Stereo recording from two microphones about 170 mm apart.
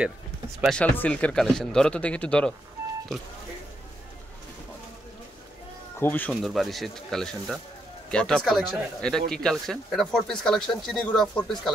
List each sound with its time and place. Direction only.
0.6 s speech: 5° left (ahead or behind)
5.9 s speech: 10° left (ahead or behind)
6.3 s speech: centre (ahead or behind)